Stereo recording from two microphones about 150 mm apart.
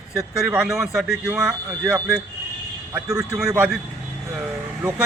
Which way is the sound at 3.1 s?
20° right (ahead or behind).